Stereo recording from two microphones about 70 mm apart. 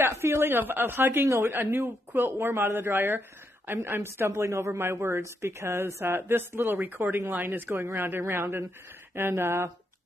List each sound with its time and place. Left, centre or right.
0.0 s a woman's voice: right